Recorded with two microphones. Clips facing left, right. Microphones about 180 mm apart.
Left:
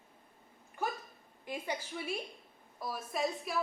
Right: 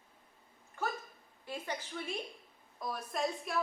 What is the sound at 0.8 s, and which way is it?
A woman's voice, 15° left (ahead or behind).